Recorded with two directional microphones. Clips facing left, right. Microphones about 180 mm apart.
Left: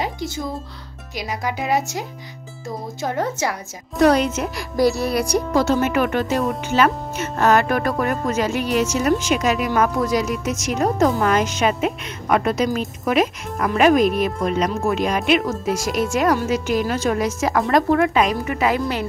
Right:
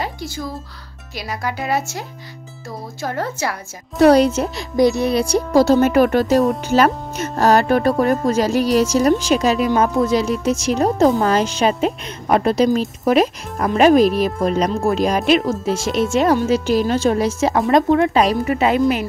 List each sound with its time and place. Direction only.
0.0 s music: 20° left (ahead or behind)
1.1 s speech: 15° left (ahead or behind)
4.0 s speech: 35° right (ahead or behind)
4.7 s speech: 20° right (ahead or behind)
18.1 s speech: 35° right (ahead or behind)